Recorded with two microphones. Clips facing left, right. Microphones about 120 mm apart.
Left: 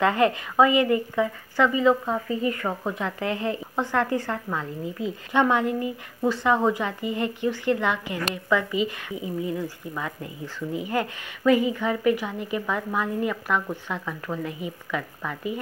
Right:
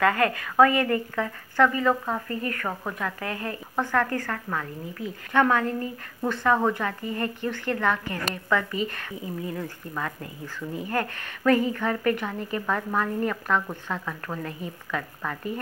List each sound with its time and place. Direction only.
0.0 s speech: 20° left (ahead or behind)